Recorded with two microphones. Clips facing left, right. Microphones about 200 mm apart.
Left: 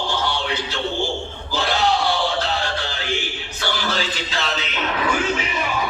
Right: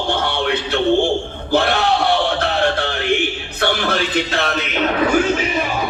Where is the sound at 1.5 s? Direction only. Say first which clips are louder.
Right 4 dB; 60° right (ahead or behind).